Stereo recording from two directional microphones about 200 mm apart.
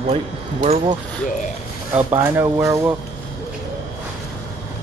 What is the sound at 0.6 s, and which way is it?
Speech, 30° right (ahead or behind).